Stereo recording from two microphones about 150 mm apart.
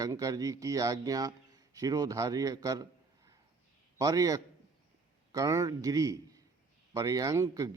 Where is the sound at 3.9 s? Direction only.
25° right (ahead or behind).